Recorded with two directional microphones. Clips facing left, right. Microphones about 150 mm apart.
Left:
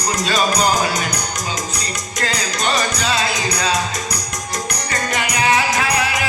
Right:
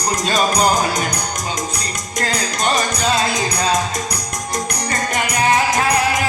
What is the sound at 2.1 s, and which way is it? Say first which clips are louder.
Music: right 2 dB; 45° right (ahead or behind).